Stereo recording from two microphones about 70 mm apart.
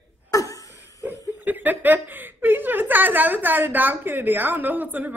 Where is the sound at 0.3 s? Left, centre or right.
Left.